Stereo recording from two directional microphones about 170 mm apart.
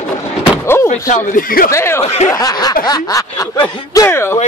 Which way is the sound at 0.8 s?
50° left (ahead or behind).